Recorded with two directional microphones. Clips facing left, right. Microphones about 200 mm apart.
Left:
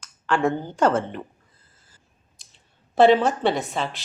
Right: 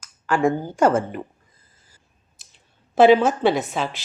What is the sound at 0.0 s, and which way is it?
Speech, 10° right (ahead or behind).